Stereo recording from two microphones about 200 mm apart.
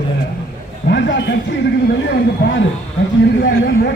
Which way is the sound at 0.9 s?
65° left (ahead or behind).